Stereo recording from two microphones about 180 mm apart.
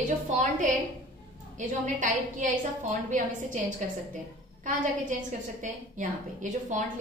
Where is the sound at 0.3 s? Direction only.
40° right (ahead or behind).